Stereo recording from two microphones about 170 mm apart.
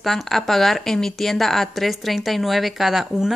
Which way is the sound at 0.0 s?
Centre (ahead or behind).